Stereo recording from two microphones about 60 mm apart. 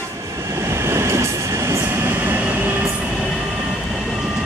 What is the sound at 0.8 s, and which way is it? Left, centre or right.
Train, right.